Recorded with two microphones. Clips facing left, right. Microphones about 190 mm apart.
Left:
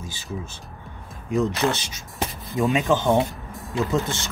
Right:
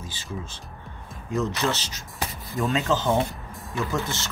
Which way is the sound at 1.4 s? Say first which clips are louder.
Left 3 dB; 15° left (ahead or behind).